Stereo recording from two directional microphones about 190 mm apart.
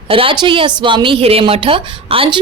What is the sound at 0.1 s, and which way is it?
A woman's voice, 30° right (ahead or behind).